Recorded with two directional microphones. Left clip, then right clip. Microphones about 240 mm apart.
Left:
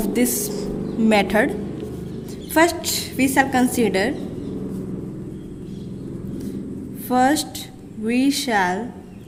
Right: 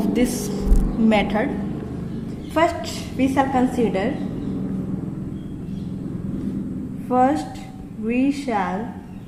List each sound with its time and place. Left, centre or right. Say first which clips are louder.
0.1 s a woman's voice: even; left
2.6 s a woman's voice: left 2 dB; left
7.1 s a woman's voice: even; left